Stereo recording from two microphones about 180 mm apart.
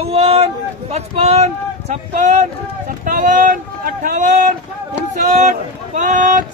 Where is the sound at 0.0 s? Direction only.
35° right (ahead or behind).